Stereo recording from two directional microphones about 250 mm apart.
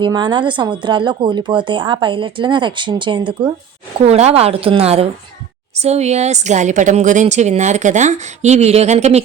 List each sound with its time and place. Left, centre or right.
0.0 s speech: centre